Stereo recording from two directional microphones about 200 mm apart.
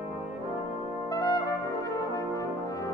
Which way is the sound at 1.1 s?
20° left (ahead or behind).